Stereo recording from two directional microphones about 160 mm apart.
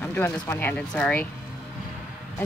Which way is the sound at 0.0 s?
15° left (ahead or behind).